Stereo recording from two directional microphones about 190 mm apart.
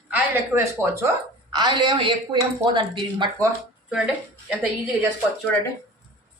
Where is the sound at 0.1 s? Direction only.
10° right (ahead or behind).